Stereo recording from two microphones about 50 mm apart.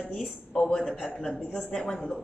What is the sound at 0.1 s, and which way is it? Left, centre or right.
A woman's voice, centre.